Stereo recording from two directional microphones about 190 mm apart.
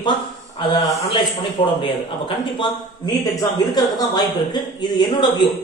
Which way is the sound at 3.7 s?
20° left (ahead or behind).